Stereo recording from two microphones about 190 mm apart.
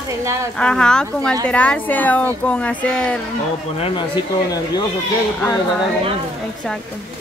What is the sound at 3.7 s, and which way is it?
Speech, 30° left (ahead or behind).